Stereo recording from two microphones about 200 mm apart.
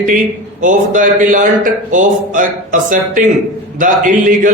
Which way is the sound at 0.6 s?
40° right (ahead or behind).